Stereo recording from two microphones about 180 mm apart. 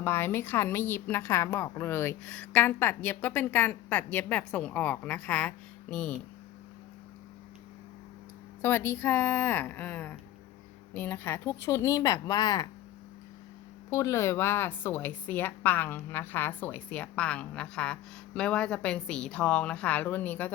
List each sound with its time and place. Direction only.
0.0 s a woman's voice: 15° left (ahead or behind)
8.6 s a woman's voice: 15° left (ahead or behind)
13.9 s a woman's voice: 15° left (ahead or behind)